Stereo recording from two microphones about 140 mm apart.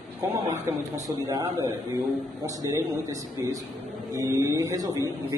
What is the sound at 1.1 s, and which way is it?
Speech, 20° right (ahead or behind).